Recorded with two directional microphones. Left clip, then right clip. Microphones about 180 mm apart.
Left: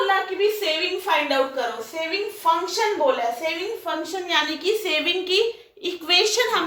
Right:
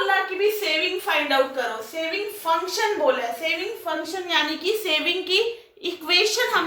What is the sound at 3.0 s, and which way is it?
A woman's voice, 15° left (ahead or behind).